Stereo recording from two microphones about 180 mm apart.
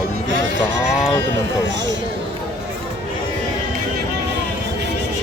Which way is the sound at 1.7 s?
80° right.